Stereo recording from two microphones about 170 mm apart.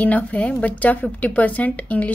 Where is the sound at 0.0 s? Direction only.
10° left (ahead or behind).